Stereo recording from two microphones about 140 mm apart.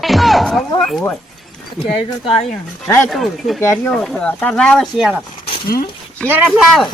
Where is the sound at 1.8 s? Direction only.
50° left (ahead or behind).